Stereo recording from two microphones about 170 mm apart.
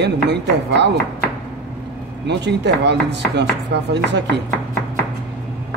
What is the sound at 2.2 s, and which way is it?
Speech, 90° right.